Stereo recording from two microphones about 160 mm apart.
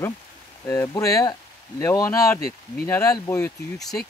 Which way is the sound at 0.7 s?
20° left (ahead or behind).